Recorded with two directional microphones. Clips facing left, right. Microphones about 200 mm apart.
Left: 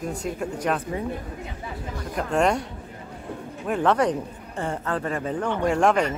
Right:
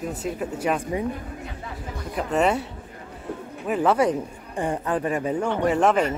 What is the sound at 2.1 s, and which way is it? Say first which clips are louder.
Speech: even; 5° right (ahead or behind).